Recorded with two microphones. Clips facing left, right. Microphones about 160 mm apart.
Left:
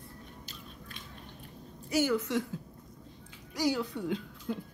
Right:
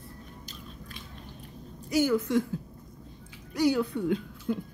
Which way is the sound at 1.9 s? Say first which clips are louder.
Right 4 dB; 45° right (ahead or behind).